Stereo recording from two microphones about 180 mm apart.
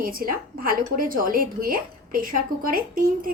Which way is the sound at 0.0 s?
50° right (ahead or behind).